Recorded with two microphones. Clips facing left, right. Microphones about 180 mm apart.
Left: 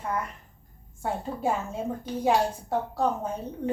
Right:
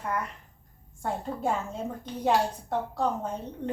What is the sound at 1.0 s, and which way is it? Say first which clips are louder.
A woman's voice: left 1 dB; 5° left (ahead or behind).